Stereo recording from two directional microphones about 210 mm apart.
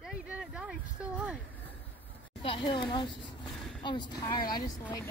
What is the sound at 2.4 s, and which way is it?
A woman's voice, 25° left (ahead or behind).